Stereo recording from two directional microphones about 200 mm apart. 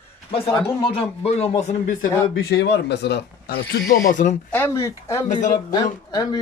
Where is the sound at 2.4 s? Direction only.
55° left (ahead or behind).